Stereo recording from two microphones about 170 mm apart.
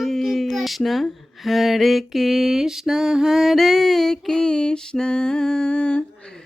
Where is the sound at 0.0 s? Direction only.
Centre (ahead or behind).